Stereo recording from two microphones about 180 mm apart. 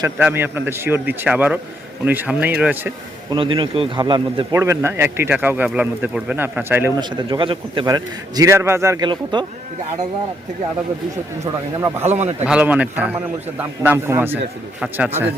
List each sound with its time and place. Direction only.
0.0 s a man's voice: 10° right (ahead or behind)
3.2 s a man's voice: 30° right (ahead or behind)
4.5 s a man's voice: 15° right (ahead or behind)
7.3 s a man's voice: 30° right (ahead or behind)
12.0 s a man's voice: 40° right (ahead or behind)
12.5 s a man's voice: 10° right (ahead or behind)